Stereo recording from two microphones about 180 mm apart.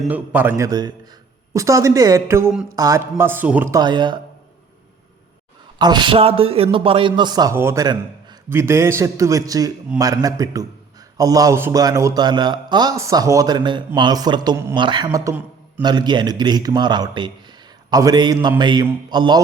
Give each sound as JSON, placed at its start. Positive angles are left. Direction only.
{"t": 0.0, "sound": "speech", "side_deg": -10}
{"t": 5.8, "sound": "a man's voice", "side_deg": -25}